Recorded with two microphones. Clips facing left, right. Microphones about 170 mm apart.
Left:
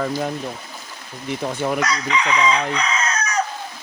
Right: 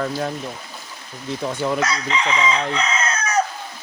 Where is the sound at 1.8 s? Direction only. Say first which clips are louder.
Even; 25° right (ahead or behind).